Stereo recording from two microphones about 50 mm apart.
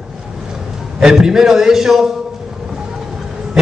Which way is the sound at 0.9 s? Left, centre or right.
Centre.